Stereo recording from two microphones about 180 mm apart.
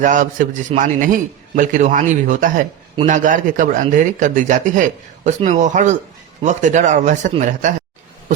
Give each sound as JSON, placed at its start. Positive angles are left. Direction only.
{"t": 0.0, "sound": "speech", "side_deg": -45}